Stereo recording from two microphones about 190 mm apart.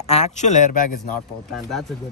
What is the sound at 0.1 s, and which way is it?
Speech, 40° left (ahead or behind).